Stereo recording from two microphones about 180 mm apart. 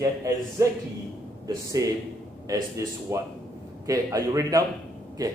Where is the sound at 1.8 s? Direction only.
15° right (ahead or behind).